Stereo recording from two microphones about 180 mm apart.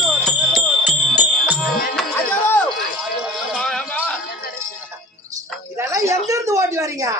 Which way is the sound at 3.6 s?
5° left (ahead or behind).